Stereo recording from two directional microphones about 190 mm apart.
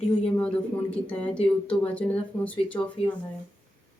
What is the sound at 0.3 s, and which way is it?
Speech, 5° left (ahead or behind).